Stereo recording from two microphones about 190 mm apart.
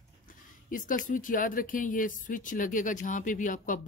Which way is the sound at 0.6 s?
45° left (ahead or behind).